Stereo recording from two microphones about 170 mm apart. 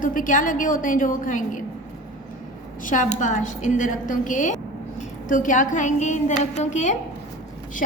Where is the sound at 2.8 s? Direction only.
50° left (ahead or behind).